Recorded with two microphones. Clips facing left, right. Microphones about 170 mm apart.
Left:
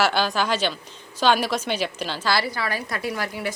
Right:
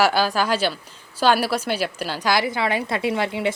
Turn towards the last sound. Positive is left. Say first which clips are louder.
# right 5 dB
turn(degrees=-25)  # may be behind; listen again after turning